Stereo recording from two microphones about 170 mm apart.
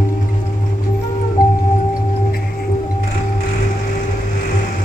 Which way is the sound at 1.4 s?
55° left (ahead or behind).